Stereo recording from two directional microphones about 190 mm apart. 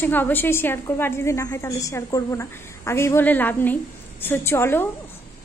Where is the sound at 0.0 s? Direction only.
10° left (ahead or behind).